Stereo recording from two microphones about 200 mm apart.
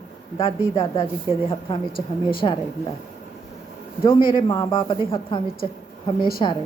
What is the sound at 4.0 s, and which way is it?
Speech, 25° left (ahead or behind).